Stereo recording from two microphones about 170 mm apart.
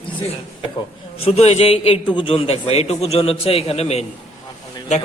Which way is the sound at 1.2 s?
40° left (ahead or behind).